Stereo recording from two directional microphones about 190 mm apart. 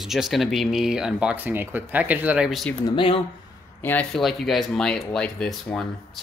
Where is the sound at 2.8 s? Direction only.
25° left (ahead or behind).